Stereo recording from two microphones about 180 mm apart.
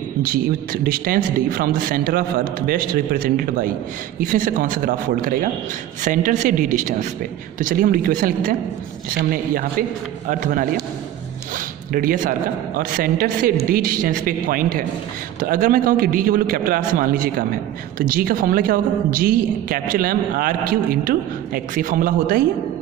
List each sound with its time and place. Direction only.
0.8 s a man's voice: 55° right (ahead or behind)
11.9 s a man's voice: 50° right (ahead or behind)